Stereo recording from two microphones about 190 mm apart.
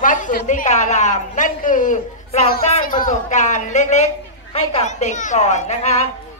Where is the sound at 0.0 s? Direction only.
45° left (ahead or behind).